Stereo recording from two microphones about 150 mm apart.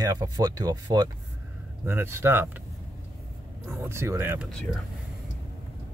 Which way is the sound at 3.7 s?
15° right (ahead or behind).